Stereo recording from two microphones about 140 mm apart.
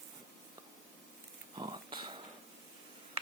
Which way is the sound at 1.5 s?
30° right (ahead or behind).